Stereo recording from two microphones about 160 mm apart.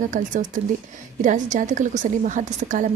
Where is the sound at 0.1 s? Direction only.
55° right (ahead or behind).